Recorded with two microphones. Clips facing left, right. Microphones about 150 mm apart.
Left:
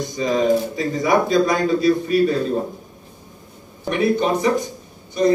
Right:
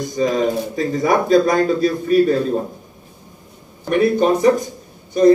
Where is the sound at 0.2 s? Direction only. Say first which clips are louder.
Even; 40° right (ahead or behind).